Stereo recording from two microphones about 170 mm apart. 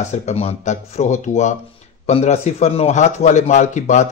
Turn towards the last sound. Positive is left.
turn(degrees=45)  # may be behind; listen again after turning